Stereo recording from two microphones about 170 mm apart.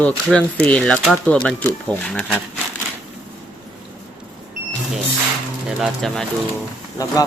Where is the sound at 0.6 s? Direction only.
5° left (ahead or behind).